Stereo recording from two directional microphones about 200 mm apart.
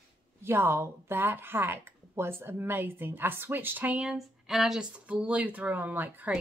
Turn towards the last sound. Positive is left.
turn(degrees=-10)  # may be behind; listen again after turning